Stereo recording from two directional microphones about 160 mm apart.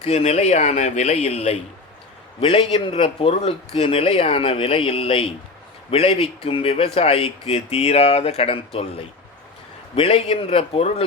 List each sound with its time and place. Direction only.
0.0 s speech: 40° left (ahead or behind)